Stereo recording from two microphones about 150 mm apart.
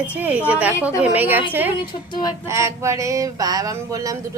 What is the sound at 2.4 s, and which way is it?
Speech, 20° right (ahead or behind).